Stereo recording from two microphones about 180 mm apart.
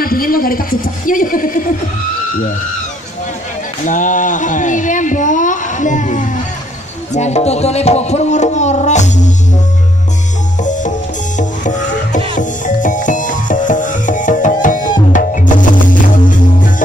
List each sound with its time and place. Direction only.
0.0 s a woman's voice: 55° left (ahead or behind)
3.8 s speech: 45° left (ahead or behind)
7.1 s music: 40° left (ahead or behind)
10.6 s music: 45° left (ahead or behind)